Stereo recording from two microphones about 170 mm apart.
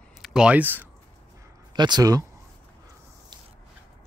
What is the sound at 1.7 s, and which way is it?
Speech, 25° right (ahead or behind).